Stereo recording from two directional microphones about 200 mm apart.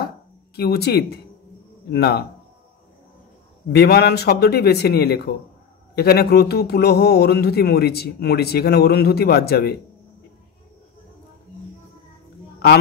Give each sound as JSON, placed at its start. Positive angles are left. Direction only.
{"t": 0.6, "sound": "speech", "side_deg": 55}
{"t": 3.7, "sound": "speech", "side_deg": 55}